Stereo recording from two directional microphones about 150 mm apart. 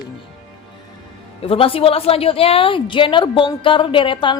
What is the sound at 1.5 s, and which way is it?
A woman's voice, 40° left (ahead or behind).